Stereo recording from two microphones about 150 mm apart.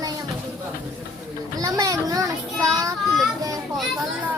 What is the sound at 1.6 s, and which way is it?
A child's voice, 25° right (ahead or behind).